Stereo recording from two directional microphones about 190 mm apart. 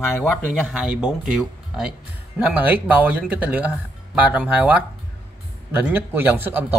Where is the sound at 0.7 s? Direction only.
5° right (ahead or behind).